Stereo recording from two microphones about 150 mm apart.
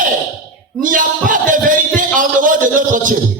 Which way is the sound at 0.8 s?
65° right (ahead or behind).